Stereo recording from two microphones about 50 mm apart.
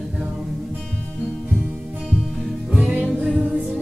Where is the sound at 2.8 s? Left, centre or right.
Centre.